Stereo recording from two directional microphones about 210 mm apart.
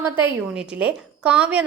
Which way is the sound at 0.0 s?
5° right (ahead or behind).